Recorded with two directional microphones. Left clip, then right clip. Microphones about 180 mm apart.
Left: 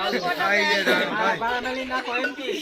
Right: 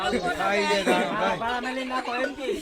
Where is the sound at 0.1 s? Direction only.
55° right (ahead or behind).